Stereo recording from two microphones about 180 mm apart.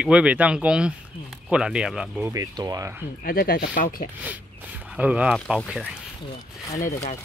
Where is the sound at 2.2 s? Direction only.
20° right (ahead or behind).